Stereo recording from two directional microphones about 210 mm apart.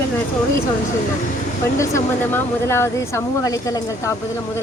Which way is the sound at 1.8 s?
10° left (ahead or behind).